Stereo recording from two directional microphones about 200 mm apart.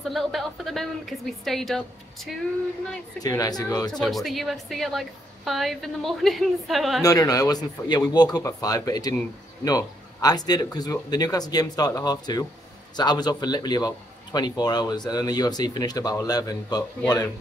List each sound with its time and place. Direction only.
0.1 s a woman's voice: centre (ahead or behind)
3.2 s a man's voice: 20° left (ahead or behind)
4.0 s a woman's voice: centre (ahead or behind)
7.0 s a man's voice: 15° left (ahead or behind)